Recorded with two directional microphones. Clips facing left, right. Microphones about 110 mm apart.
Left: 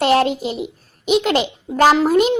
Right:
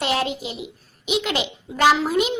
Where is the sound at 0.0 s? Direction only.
40° left (ahead or behind).